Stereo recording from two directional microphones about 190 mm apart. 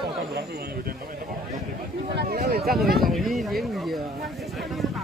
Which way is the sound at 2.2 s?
55° right (ahead or behind).